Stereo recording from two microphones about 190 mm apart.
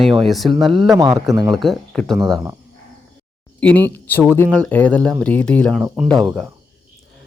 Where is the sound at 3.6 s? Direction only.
10° left (ahead or behind).